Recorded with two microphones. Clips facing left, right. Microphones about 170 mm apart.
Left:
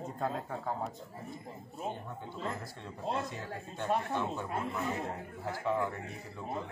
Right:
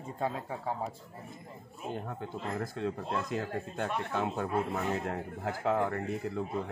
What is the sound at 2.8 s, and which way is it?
Speech, 90° right.